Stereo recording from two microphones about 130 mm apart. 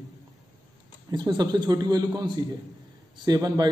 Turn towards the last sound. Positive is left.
turn(degrees=-30)  # may be behind; listen again after turning